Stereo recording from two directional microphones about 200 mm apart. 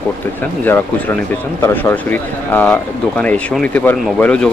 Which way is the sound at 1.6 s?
10° left (ahead or behind).